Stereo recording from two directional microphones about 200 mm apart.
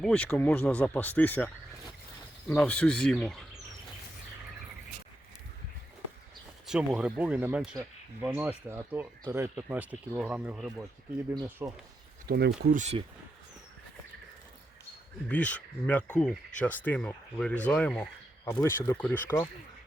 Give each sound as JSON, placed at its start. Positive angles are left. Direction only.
{"t": 0.0, "sound": "speech", "side_deg": 5}
{"t": 2.5, "sound": "speech", "side_deg": 10}
{"t": 6.7, "sound": "speech", "side_deg": -5}
{"t": 12.3, "sound": "speech", "side_deg": -50}
{"t": 12.7, "sound": "speech", "side_deg": -35}
{"t": 15.3, "sound": "speech", "side_deg": 5}